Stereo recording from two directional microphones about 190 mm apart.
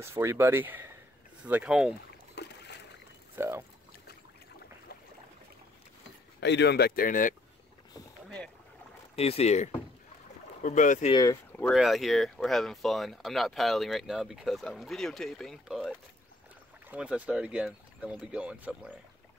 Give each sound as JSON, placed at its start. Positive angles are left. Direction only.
{"t": 0.0, "sound": "speech", "side_deg": -15}
{"t": 2.3, "sound": "boat", "side_deg": 65}
{"t": 3.3, "sound": "speech", "side_deg": -15}
{"t": 6.4, "sound": "speech", "side_deg": 65}
{"t": 9.1, "sound": "speech", "side_deg": 30}
{"t": 11.1, "sound": "speech", "side_deg": 20}
{"t": 11.7, "sound": "speech", "side_deg": 0}